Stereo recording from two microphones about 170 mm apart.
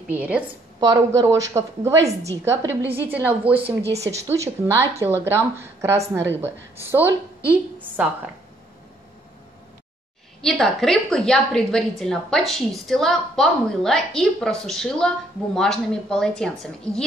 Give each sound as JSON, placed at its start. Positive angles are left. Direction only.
{"t": 0.1, "sound": "a woman's voice", "side_deg": -10}
{"t": 0.7, "sound": "a woman's voice", "side_deg": -25}
{"t": 10.4, "sound": "a woman's voice", "side_deg": 0}